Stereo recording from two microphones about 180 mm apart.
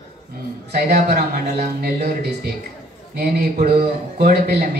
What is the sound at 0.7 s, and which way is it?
A man's voice, 60° right (ahead or behind).